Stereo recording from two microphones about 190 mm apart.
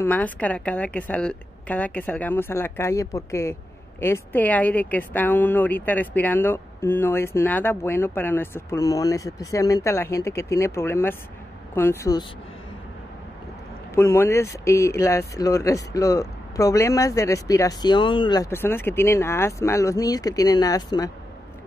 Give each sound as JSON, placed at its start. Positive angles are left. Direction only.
{"t": 0.0, "sound": "speech", "side_deg": 10}
{"t": 13.9, "sound": "speech", "side_deg": 15}